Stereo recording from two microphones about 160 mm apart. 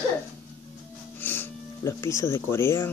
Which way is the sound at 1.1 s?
10° left (ahead or behind).